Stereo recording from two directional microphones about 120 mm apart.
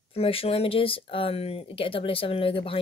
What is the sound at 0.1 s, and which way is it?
Speech, 55° left (ahead or behind).